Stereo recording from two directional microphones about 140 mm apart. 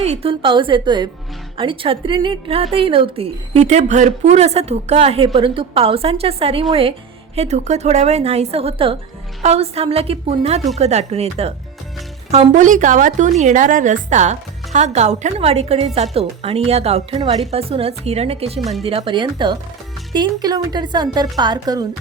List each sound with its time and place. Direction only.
0.0 s a woman's voice: 45° right (ahead or behind)
7.3 s a woman's voice: 55° right (ahead or behind); by 21.8 s 30° right (ahead or behind)